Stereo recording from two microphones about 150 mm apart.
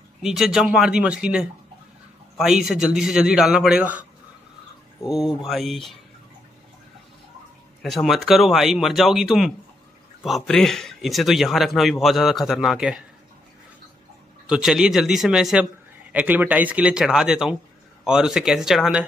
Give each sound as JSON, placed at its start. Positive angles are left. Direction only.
{"t": 0.2, "sound": "speech", "side_deg": 0}
{"t": 5.0, "sound": "speech", "side_deg": -5}
{"t": 7.8, "sound": "speech", "side_deg": 0}
{"t": 14.5, "sound": "a man's voice", "side_deg": -5}